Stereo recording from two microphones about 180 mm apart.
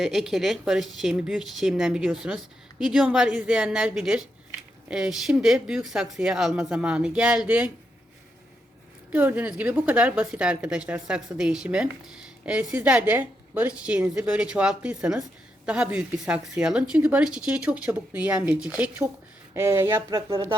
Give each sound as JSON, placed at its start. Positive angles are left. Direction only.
{"t": 0.0, "sound": "a woman's voice", "side_deg": 0}
{"t": 9.1, "sound": "a woman's voice", "side_deg": -10}